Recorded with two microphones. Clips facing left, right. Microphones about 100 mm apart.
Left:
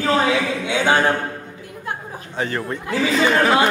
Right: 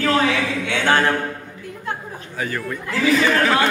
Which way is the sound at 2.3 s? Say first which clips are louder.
Left 2 dB; 30° left (ahead or behind).